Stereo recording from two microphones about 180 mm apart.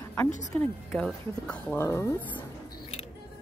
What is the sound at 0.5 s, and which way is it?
Speech, 10° left (ahead or behind).